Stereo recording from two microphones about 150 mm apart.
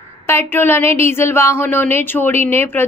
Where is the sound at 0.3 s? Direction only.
15° left (ahead or behind).